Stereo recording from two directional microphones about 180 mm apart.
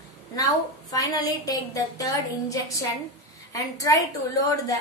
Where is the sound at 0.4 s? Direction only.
20° left (ahead or behind).